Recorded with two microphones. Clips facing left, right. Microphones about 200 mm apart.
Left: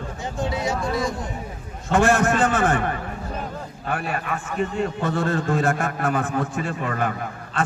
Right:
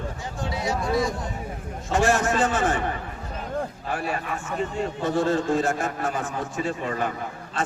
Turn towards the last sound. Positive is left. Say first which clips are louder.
# left 1 dB
turn(degrees=60)  # may be behind; listen again after turning